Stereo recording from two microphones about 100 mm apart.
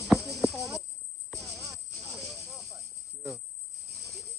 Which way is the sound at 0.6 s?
35° right (ahead or behind).